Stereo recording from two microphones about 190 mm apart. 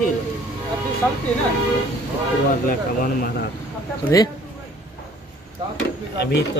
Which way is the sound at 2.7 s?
45° left (ahead or behind).